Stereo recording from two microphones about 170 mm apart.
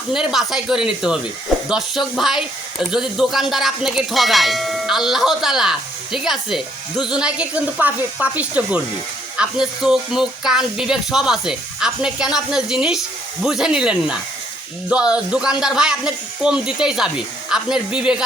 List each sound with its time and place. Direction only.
0.1 s bell: centre (ahead or behind)
7.0 s speech: 5° right (ahead or behind)
9.4 s bell: 5° right (ahead or behind)